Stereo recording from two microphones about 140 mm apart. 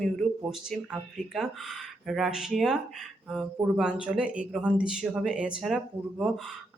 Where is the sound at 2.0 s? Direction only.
Centre (ahead or behind).